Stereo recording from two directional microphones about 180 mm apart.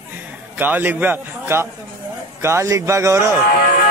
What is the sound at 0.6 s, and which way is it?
A man's voice, 10° right (ahead or behind).